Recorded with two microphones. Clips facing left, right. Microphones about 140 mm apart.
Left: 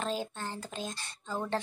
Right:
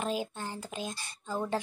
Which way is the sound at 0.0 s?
10° right (ahead or behind).